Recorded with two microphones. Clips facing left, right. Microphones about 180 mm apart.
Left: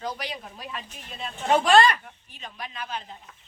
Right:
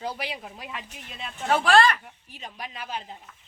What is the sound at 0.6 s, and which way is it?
Speech, 20° right (ahead or behind).